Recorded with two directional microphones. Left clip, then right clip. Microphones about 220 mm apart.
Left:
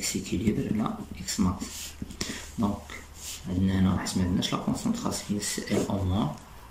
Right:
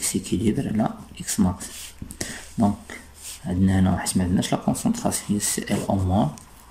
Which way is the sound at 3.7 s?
30° right (ahead or behind).